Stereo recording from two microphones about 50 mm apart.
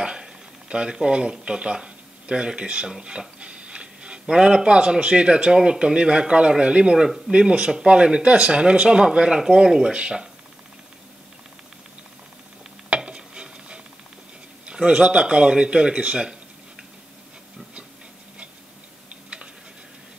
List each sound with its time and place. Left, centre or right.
0.0 s speech: centre
12.9 s dishes: centre
14.7 s speech: centre